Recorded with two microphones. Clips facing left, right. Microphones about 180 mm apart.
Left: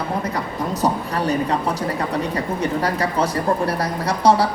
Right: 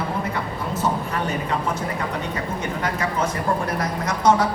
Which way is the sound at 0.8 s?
35° left (ahead or behind).